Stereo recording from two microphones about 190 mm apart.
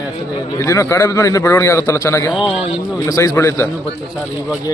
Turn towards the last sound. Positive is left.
turn(degrees=15)  # may be behind; listen again after turning